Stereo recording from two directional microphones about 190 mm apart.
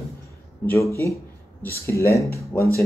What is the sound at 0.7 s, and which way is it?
Speech, 15° left (ahead or behind).